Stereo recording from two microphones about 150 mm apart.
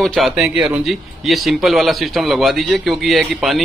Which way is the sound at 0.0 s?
Centre (ahead or behind).